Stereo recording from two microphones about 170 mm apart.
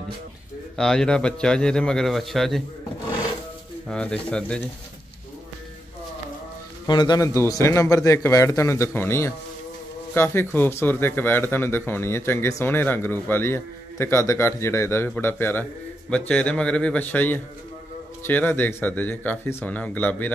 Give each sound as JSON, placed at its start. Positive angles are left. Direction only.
{"t": 0.7, "sound": "a man's voice", "side_deg": 5}
{"t": 3.9, "sound": "a man's voice", "side_deg": 5}
{"t": 6.9, "sound": "speech", "side_deg": 25}